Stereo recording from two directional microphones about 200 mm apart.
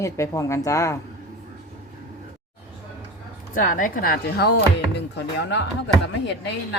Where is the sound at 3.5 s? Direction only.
40° left (ahead or behind); by 5.6 s 60° left (ahead or behind).